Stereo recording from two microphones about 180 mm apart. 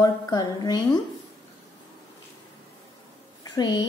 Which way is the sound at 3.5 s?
25° left (ahead or behind).